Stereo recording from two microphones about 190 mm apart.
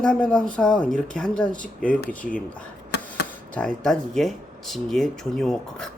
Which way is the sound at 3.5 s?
5° left (ahead or behind).